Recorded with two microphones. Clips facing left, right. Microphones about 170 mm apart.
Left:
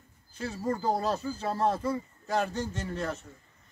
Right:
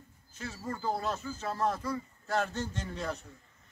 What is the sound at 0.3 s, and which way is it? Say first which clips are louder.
Speech: left 7 dB; 35° left (ahead or behind).